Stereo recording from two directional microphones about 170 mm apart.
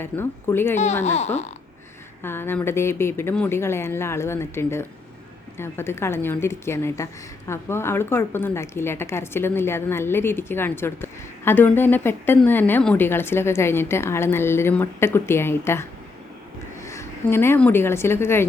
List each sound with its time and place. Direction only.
0.0 s a woman's voice: 15° left (ahead or behind)
1.0 s speech: 40° left (ahead or behind)
2.2 s a woman's voice: 15° left (ahead or behind)